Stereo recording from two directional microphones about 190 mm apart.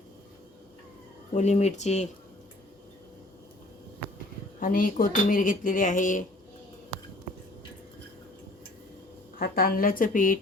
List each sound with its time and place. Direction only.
1.3 s speech: 35° left (ahead or behind)
4.6 s speech: 50° left (ahead or behind)
9.4 s speech: 50° left (ahead or behind)